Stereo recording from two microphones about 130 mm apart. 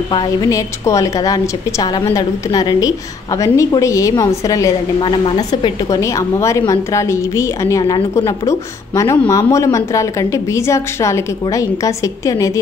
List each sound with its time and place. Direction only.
0.1 s a woman's voice: 25° left (ahead or behind)
5.0 s a woman's voice: 40° left (ahead or behind)